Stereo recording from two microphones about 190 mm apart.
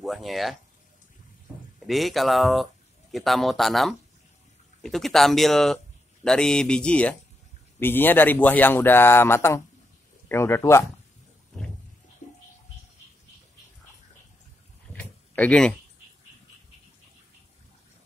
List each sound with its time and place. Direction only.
0.0 s a sound: centre (ahead or behind)
1.8 s speech: centre (ahead or behind)
12.2 s music: 40° left (ahead or behind)
14.9 s door: 5° left (ahead or behind)